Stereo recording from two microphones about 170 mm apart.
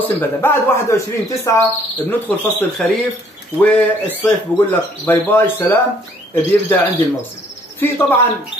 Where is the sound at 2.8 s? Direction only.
5° left (ahead or behind).